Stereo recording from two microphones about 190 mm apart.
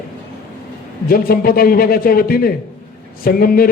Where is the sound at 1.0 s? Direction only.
50° left (ahead or behind).